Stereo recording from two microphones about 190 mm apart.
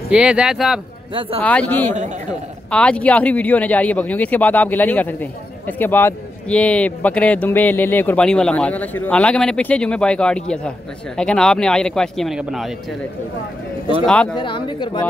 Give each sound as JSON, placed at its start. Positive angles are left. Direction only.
{"t": 0.1, "sound": "a man's voice", "side_deg": -5}
{"t": 14.0, "sound": "a man's voice", "side_deg": 5}
{"t": 14.3, "sound": "speech", "side_deg": 25}